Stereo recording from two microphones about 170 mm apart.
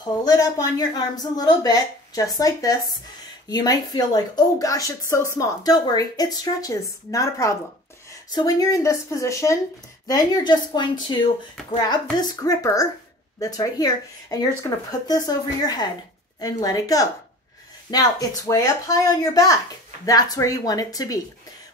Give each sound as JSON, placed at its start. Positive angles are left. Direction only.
{"t": 0.0, "sound": "a woman's voice", "side_deg": 20}